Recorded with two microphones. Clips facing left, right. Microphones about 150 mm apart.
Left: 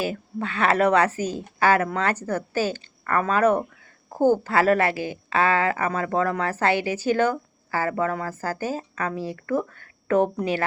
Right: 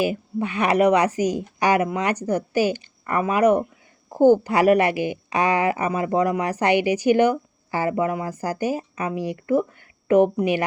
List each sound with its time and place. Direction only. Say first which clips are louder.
0.0 s a woman's voice: right 4 dB; 15° right (ahead or behind)